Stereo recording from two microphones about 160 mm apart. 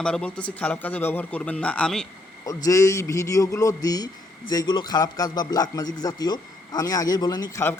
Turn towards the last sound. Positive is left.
turn(degrees=25)  # may be behind; listen again after turning